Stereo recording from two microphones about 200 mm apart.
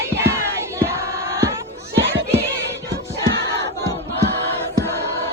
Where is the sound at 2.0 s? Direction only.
65° right (ahead or behind).